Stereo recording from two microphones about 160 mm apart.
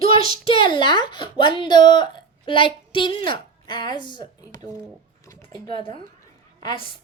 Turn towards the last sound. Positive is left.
turn(degrees=25)  # may be behind; listen again after turning